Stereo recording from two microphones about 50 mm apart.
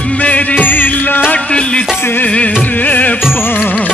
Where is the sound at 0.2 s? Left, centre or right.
Left.